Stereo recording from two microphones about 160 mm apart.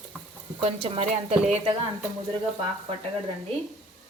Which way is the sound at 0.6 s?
40° right (ahead or behind).